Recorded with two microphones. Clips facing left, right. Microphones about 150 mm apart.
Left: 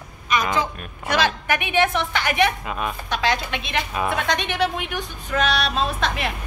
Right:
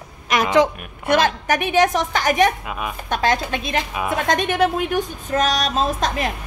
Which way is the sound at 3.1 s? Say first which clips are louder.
Right 4 dB; 45° right (ahead or behind).